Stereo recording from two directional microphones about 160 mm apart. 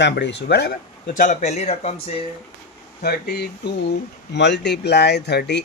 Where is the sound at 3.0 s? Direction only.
85° left.